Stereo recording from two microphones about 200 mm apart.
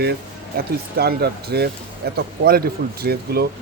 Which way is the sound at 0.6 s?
50° right (ahead or behind).